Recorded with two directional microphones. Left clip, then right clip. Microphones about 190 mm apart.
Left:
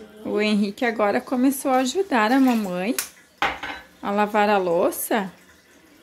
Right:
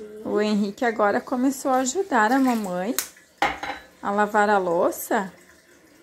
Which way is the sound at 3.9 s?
15° left (ahead or behind).